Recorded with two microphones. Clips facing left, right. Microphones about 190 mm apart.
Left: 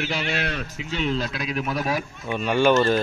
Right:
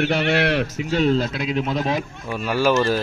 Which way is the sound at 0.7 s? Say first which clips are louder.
Right 7 dB; 40° right (ahead or behind).